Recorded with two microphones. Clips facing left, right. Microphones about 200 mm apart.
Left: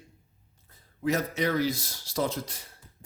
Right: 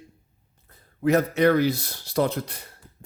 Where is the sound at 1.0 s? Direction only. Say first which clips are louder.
Right 8 dB; 60° right (ahead or behind).